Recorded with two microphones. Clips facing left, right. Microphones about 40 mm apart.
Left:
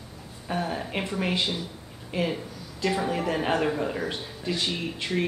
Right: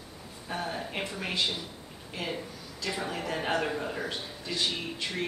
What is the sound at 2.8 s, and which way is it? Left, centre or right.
Speech, centre.